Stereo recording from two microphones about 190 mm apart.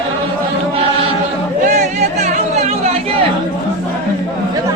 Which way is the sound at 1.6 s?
40° right (ahead or behind).